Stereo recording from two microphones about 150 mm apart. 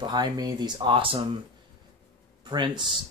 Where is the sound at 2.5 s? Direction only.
30° right (ahead or behind).